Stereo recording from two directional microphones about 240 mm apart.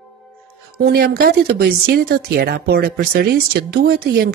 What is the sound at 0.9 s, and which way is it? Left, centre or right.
Speech, right.